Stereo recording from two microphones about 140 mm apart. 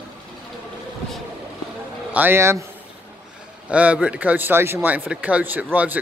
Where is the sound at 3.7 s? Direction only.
10° right (ahead or behind).